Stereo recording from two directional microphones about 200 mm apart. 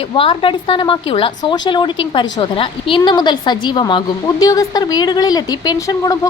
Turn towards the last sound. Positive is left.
turn(degrees=20)  # may be behind; listen again after turning